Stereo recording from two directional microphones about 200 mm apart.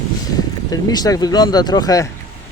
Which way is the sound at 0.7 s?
20° left (ahead or behind).